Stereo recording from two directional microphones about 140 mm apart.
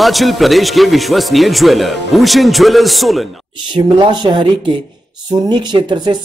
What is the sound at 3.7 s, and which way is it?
Speech, 35° right (ahead or behind).